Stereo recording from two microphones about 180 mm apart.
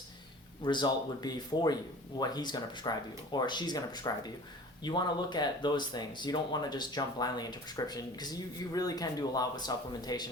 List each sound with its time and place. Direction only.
0.6 s speech: 25° left (ahead or behind)